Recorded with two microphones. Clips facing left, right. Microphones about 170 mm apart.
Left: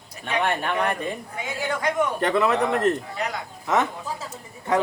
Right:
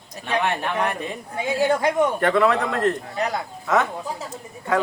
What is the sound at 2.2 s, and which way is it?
Speech, 20° left (ahead or behind).